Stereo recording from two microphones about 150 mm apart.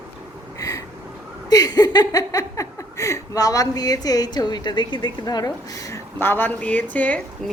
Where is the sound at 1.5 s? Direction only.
25° left (ahead or behind).